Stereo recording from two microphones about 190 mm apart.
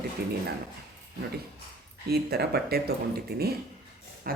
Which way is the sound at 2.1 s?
60° right (ahead or behind).